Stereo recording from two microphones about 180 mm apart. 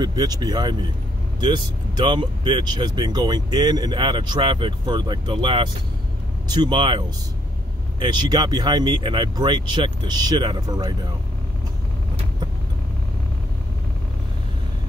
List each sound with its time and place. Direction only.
0.0 s speech: 20° right (ahead or behind)